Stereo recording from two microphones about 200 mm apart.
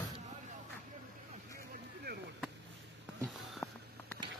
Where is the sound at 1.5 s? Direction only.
50° right (ahead or behind).